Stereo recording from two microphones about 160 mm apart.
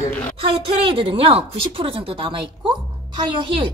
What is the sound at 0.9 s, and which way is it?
A woman's voice, 35° right (ahead or behind).